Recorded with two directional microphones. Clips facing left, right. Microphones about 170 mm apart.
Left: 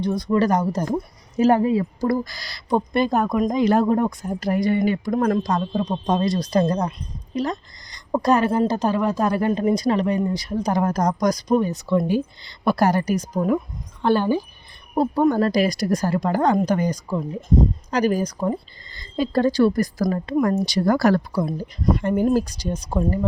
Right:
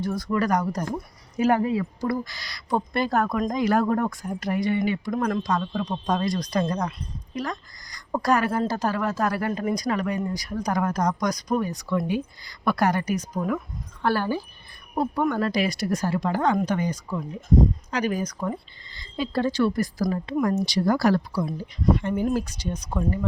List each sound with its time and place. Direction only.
0.0 s a woman's voice: 20° left (ahead or behind)
1.8 s speech: 35° left (ahead or behind)
2.6 s a woman's voice: 20° left (ahead or behind)
5.8 s a woman's voice: 20° left (ahead or behind)
14.0 s a woman's voice: 20° left (ahead or behind)
14.9 s speech: 30° left (ahead or behind)
18.9 s speech: 45° left (ahead or behind)
21.4 s speech: 40° left (ahead or behind)